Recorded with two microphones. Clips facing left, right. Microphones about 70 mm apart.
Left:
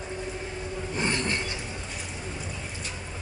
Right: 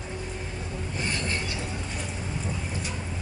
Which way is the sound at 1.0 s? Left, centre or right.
Left.